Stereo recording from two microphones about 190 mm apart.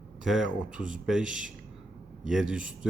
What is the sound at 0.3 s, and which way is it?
Speech, 5° right (ahead or behind).